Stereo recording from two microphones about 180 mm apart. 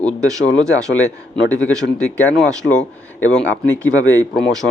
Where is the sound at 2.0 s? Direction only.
5° left (ahead or behind).